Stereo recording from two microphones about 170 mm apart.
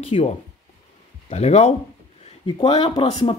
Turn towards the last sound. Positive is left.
turn(degrees=30)  # may be behind; listen again after turning